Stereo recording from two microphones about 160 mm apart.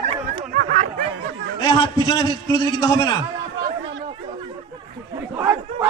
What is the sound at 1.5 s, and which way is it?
A man's voice, 30° left (ahead or behind).